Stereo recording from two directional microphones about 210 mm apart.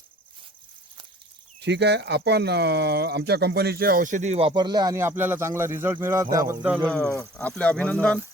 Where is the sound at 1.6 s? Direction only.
55° right (ahead or behind); by 6.8 s 10° right (ahead or behind).